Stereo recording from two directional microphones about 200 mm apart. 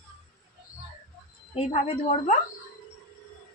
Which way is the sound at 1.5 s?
30° left (ahead or behind).